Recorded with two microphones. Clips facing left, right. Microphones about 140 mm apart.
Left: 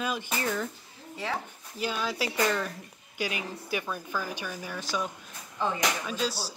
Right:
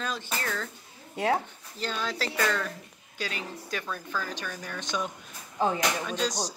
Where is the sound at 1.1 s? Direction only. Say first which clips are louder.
Right 7 dB; 50° right (ahead or behind).